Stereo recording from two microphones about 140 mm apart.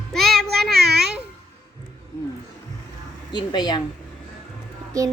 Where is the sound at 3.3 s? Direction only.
30° left (ahead or behind).